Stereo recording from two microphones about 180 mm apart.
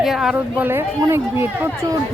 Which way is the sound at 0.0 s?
Centre (ahead or behind).